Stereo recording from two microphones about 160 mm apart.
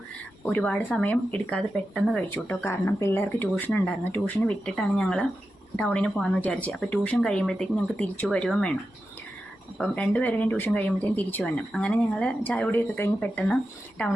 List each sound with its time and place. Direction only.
0.4 s speech: 10° left (ahead or behind)
9.7 s speech: 5° left (ahead or behind)